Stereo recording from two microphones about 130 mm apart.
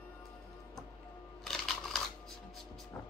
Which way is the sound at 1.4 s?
5° left (ahead or behind).